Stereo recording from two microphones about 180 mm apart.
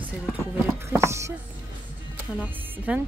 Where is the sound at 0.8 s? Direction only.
15° right (ahead or behind).